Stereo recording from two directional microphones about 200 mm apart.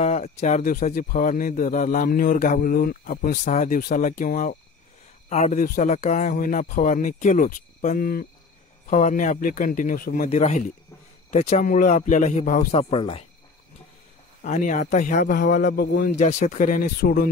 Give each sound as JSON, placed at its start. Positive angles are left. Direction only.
{"t": 0.0, "sound": "speech", "side_deg": 35}
{"t": 14.4, "sound": "speech", "side_deg": 40}
{"t": 15.1, "sound": "a man's voice", "side_deg": 55}